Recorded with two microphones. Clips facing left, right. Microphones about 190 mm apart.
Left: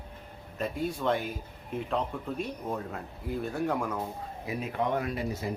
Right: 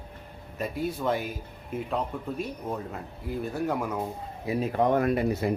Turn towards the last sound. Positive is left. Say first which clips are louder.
# right 8 dB
turn(degrees=-60)  # may be behind; listen again after turning